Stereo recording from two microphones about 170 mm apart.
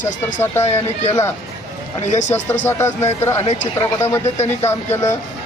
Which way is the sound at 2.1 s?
45° left (ahead or behind).